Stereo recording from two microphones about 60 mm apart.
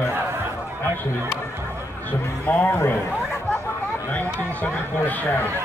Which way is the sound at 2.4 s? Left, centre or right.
Left.